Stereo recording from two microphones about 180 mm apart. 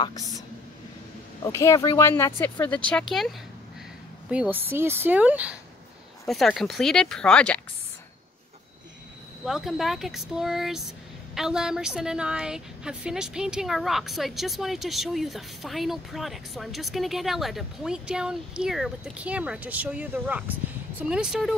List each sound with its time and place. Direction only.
1.4 s speech: 15° left (ahead or behind)
2.9 s a woman's voice: centre (ahead or behind)
4.3 s a woman's voice: 10° right (ahead or behind)
9.4 s a woman's voice: centre (ahead or behind)